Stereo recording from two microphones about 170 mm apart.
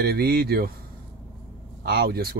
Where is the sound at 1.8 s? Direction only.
70° right (ahead or behind).